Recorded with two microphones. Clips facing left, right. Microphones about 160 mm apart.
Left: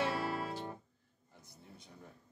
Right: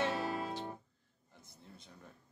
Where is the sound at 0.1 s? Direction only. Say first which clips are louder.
Even; 20° right (ahead or behind).